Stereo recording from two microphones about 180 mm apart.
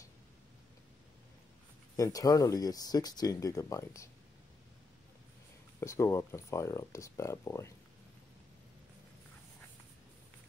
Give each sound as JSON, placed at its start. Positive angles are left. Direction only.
{"t": 2.0, "sound": "speech", "side_deg": 20}
{"t": 5.8, "sound": "speech", "side_deg": 15}